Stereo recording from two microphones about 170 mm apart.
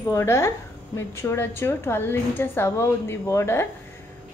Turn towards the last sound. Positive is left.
turn(degrees=15)  # may be behind; listen again after turning